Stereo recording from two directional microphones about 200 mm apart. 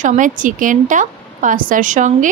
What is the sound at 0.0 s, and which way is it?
A woman's voice, 40° right (ahead or behind).